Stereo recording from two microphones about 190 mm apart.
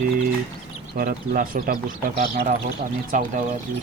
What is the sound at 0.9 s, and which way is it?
Speech, 50° right (ahead or behind).